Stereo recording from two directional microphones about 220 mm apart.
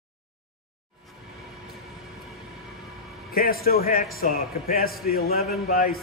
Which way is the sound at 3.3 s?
40° left (ahead or behind).